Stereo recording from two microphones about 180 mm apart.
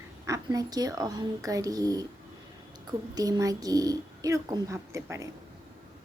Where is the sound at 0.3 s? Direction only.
20° right (ahead or behind).